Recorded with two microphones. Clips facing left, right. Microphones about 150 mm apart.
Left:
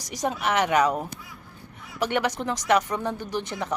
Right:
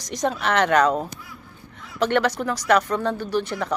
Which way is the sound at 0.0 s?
10° left (ahead or behind).